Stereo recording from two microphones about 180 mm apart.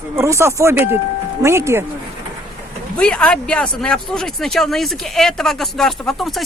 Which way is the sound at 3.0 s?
5° left (ahead or behind).